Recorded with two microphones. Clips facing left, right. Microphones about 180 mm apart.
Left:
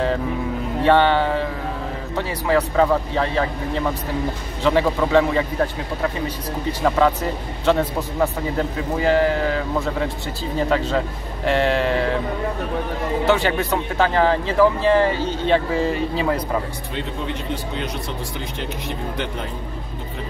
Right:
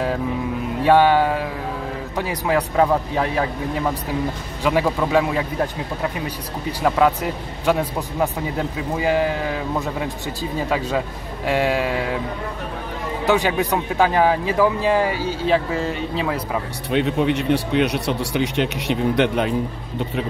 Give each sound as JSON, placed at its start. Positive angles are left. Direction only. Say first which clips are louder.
{"t": 0.8, "sound": "speech", "louder": "right 2 dB", "side_deg": -10}
{"t": 4.6, "sound": "speech", "louder": "left 1 dB", "side_deg": -10}
{"t": 7.6, "sound": "speech", "louder": "left 1 dB", "side_deg": -10}
{"t": 11.4, "sound": "speech", "louder": "left 1 dB", "side_deg": -10}
{"t": 13.3, "sound": "speech", "louder": "right 2 dB", "side_deg": -15}
{"t": 16.9, "sound": "speech", "louder": "right 10 dB", "side_deg": -70}